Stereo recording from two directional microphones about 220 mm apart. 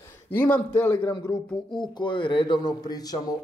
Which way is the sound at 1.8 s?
20° left (ahead or behind).